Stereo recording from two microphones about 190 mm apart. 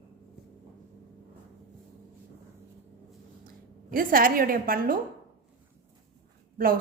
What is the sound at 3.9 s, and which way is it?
A woman's voice, 45° right (ahead or behind).